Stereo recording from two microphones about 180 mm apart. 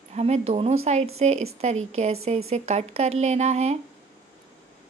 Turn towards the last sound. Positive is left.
turn(degrees=-40)  # may be behind; listen again after turning